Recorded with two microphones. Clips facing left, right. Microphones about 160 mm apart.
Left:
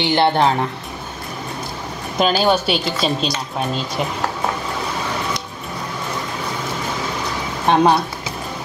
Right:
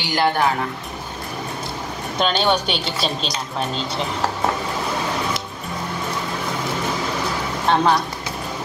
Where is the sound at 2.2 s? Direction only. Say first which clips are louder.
Left 3 dB; 5° left (ahead or behind).